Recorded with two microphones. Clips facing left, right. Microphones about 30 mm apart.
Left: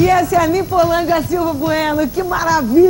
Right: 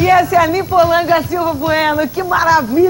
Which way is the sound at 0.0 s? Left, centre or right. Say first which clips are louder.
Right 2 dB; centre.